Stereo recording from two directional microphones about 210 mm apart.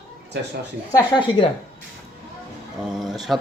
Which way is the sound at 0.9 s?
20° left (ahead or behind).